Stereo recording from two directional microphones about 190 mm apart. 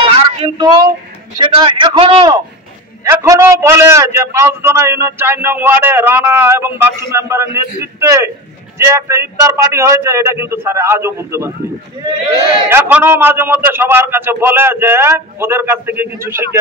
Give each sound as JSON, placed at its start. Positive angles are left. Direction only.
{"t": 0.0, "sound": "a sound", "side_deg": -25}
{"t": 1.4, "sound": "a man's voice", "side_deg": -25}
{"t": 3.1, "sound": "a man's voice", "side_deg": -15}
{"t": 12.6, "sound": "a man's voice", "side_deg": -10}